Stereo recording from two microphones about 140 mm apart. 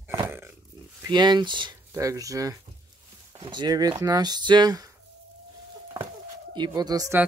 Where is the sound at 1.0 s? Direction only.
30° right (ahead or behind).